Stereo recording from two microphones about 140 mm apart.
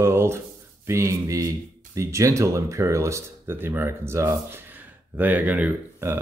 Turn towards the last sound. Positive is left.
turn(degrees=-15)  # may be behind; listen again after turning